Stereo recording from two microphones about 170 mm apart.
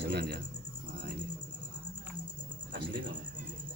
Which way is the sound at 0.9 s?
75° right (ahead or behind).